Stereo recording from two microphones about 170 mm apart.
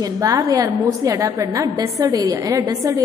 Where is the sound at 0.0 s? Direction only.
20° right (ahead or behind).